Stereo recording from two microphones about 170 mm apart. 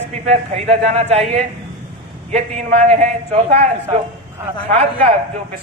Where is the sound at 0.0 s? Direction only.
40° right (ahead or behind).